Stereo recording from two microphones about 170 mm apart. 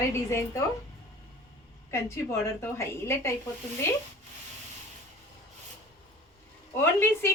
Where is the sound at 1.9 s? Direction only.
15° left (ahead or behind).